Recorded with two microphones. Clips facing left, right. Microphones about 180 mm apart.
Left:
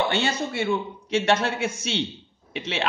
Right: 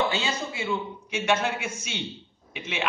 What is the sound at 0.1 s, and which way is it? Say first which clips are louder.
Speech: left 4 dB; 70° left (ahead or behind).